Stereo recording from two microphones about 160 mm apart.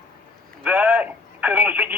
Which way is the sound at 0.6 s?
10° right (ahead or behind).